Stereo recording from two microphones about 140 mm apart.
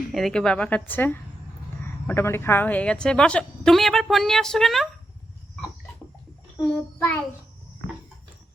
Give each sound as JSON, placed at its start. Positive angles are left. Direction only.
{"t": 0.1, "sound": "a woman's voice", "side_deg": 0}
{"t": 6.7, "sound": "a woman's voice", "side_deg": 15}